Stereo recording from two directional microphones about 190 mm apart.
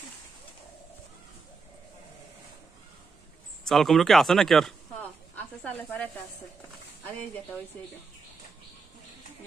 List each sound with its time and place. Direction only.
3.6 s speech: centre (ahead or behind)